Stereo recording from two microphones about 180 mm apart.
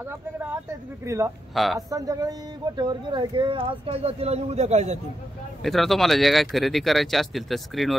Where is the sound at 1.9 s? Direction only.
20° right (ahead or behind); by 4.9 s 40° right (ahead or behind).